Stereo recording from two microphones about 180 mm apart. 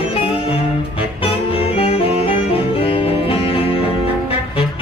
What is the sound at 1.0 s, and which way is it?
Saxophone, 30° left (ahead or behind).